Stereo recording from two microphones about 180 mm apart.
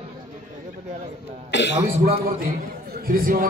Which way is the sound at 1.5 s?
75° left (ahead or behind).